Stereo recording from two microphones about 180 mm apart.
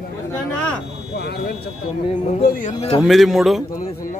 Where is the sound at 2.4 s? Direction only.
45° left (ahead or behind).